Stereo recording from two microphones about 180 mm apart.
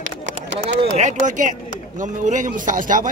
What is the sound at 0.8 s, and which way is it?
Speech, 40° right (ahead or behind).